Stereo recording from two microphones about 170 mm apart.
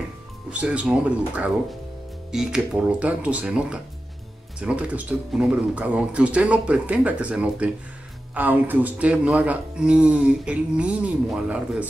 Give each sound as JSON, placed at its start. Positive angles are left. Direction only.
{"t": 0.5, "sound": "speech", "side_deg": -5}